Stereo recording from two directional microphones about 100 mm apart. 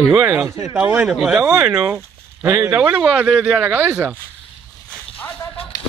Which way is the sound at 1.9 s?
30° right (ahead or behind).